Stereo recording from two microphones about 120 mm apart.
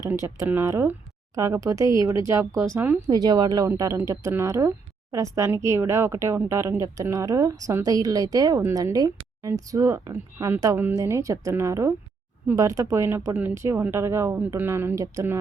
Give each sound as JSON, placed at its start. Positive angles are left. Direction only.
{"t": 0.4, "sound": "speech", "side_deg": -20}
{"t": 3.1, "sound": "speech", "side_deg": -35}